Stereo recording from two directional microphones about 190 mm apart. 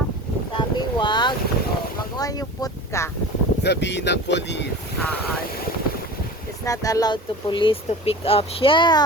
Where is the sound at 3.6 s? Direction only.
65° left (ahead or behind).